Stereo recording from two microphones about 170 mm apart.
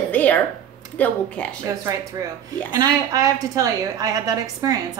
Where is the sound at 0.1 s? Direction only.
10° left (ahead or behind).